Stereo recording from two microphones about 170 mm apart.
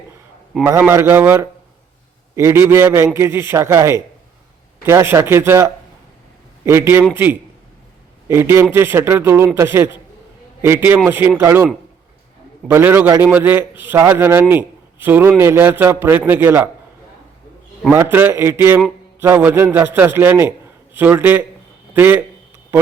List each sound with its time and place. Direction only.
0.6 s a man's voice: 10° right (ahead or behind)
17.9 s a man's voice: 10° right (ahead or behind)